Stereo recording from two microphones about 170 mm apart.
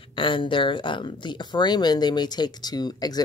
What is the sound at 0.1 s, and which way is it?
Speech, 30° left (ahead or behind).